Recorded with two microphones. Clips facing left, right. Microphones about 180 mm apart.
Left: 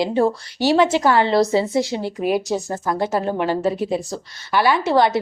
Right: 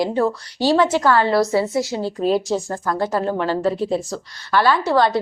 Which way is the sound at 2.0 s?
15° left (ahead or behind).